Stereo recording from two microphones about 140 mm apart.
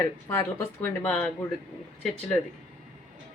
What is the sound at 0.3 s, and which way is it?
Speech, 15° left (ahead or behind).